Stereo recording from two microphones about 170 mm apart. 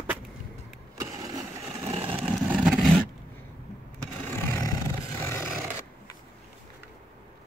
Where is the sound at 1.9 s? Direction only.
35° right (ahead or behind).